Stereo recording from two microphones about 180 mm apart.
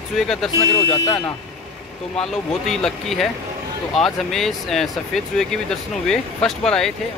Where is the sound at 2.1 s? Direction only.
5° left (ahead or behind).